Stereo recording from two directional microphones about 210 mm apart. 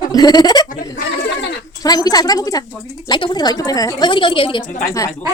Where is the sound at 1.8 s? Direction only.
15° left (ahead or behind).